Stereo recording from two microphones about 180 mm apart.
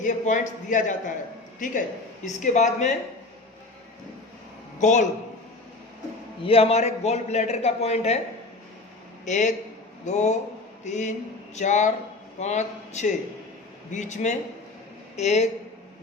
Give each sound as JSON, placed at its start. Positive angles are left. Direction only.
{"t": 0.0, "sound": "a man's voice", "side_deg": 45}
{"t": 4.8, "sound": "a man's voice", "side_deg": 40}
{"t": 6.4, "sound": "a man's voice", "side_deg": 35}
{"t": 9.2, "sound": "a man's voice", "side_deg": 40}